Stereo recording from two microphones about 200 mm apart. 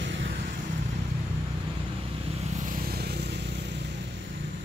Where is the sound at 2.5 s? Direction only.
40° right (ahead or behind); by 3.7 s 60° right (ahead or behind).